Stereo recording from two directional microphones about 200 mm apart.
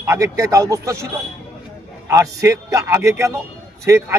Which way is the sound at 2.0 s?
15° right (ahead or behind).